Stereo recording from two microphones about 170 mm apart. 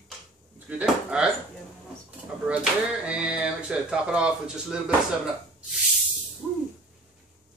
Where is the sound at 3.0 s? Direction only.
5° right (ahead or behind).